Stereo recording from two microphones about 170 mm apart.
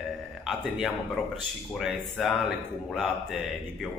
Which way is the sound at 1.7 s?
Centre (ahead or behind).